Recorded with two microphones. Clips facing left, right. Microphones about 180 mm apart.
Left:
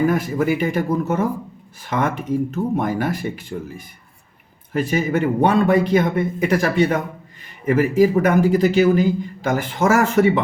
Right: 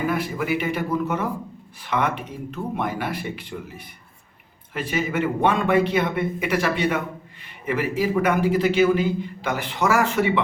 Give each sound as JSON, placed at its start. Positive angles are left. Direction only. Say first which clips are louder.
{"t": 0.1, "sound": "speech", "louder": "left 5 dB", "side_deg": 45}